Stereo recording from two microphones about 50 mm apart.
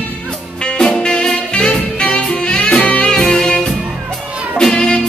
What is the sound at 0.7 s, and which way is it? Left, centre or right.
Music, centre.